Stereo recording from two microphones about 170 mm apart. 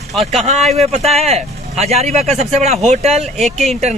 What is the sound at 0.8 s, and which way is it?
Speech, 40° right (ahead or behind).